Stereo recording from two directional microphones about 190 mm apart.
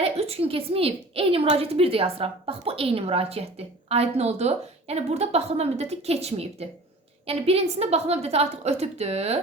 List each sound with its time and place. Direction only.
0.0 s a woman's voice: 30° right (ahead or behind)